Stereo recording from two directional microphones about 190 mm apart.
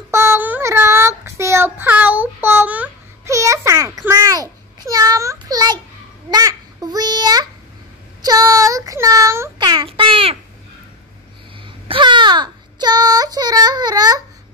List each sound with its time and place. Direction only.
0.1 s child singing: 15° right (ahead or behind)
8.2 s a sound: 20° right (ahead or behind)
11.9 s child singing: 25° right (ahead or behind)